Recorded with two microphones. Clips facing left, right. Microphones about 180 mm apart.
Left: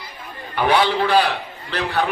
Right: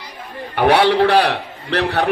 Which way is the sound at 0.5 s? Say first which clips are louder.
Right 5 dB; 70° right (ahead or behind).